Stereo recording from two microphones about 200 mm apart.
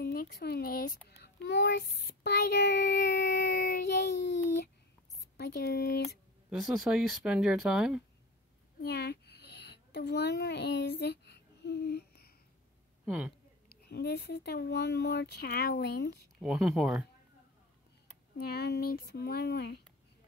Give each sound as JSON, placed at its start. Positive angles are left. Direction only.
{"t": 0.0, "sound": "a child's voice", "side_deg": 50}
{"t": 5.4, "sound": "speech", "side_deg": 55}
{"t": 6.5, "sound": "speech", "side_deg": 0}
{"t": 8.8, "sound": "a sound", "side_deg": 55}
{"t": 13.0, "sound": "speech", "side_deg": -5}
{"t": 13.7, "sound": "speech", "side_deg": 55}
{"t": 16.3, "sound": "speech", "side_deg": 0}
{"t": 18.4, "sound": "speech", "side_deg": 55}